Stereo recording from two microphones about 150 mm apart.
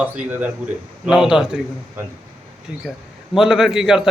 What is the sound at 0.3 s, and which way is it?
A man's voice, 10° right (ahead or behind).